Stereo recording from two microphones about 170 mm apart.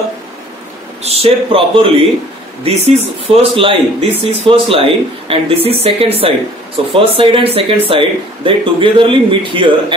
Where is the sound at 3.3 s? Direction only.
35° right (ahead or behind).